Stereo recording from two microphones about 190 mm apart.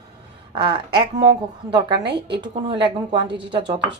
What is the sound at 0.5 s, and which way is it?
A woman's voice, 25° right (ahead or behind).